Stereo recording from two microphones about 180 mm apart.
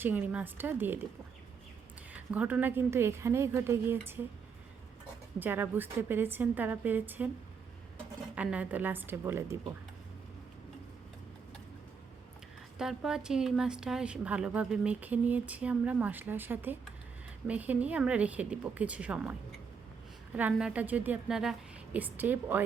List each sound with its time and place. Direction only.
0.0 s a woman's voice: 10° right (ahead or behind)
2.3 s a woman's voice: 10° right (ahead or behind)
5.4 s a woman's voice: 10° right (ahead or behind)
8.4 s a woman's voice: 5° right (ahead or behind)
12.8 s a woman's voice: 5° right (ahead or behind)